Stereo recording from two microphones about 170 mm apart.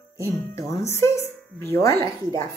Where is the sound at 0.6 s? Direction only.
15° left (ahead or behind).